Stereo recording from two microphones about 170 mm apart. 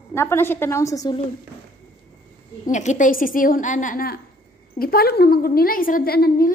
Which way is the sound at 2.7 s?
45° left (ahead or behind).